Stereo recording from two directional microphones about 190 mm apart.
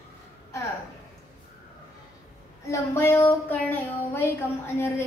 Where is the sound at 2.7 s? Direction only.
10° left (ahead or behind).